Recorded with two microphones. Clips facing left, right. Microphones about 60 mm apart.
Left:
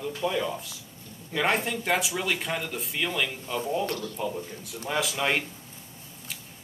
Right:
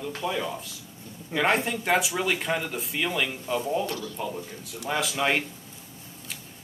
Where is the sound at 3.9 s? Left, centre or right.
Left.